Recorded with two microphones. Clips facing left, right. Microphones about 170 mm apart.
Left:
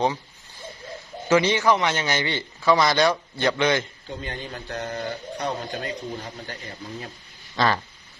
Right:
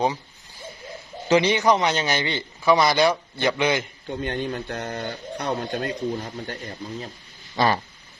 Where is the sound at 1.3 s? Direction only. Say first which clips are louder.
Right 1 dB; 15° right (ahead or behind).